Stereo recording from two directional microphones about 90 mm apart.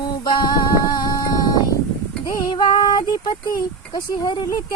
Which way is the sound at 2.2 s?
50° left (ahead or behind).